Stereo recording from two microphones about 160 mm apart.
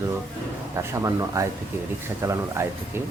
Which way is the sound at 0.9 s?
20° right (ahead or behind).